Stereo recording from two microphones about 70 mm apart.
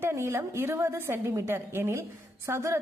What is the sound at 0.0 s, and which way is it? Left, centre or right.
A woman's voice, right.